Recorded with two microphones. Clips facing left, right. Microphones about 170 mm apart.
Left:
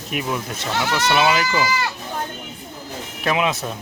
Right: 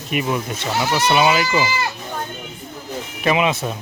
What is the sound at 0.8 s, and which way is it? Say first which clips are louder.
Speech: right 2 dB; 20° right (ahead or behind).